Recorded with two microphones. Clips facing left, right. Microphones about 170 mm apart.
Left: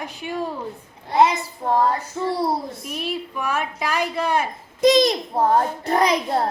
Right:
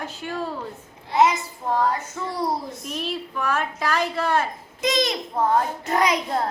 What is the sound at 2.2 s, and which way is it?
Speech, 20° left (ahead or behind).